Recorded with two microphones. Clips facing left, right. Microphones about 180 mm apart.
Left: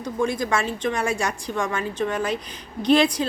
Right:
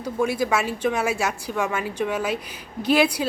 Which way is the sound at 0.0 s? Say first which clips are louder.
Right 1 dB; 10° right (ahead or behind).